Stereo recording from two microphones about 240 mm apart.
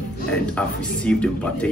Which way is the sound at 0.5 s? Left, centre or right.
Centre.